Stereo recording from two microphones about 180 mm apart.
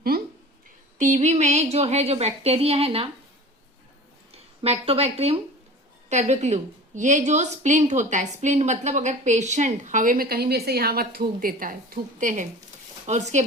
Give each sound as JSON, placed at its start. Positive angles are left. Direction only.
{"t": 0.9, "sound": "a woman's voice", "side_deg": -45}
{"t": 4.3, "sound": "a woman's voice", "side_deg": -35}